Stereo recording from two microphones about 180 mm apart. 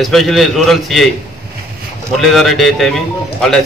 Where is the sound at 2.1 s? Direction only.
Centre (ahead or behind).